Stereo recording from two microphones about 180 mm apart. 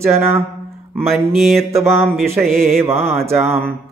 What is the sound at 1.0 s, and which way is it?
Mantra, centre (ahead or behind).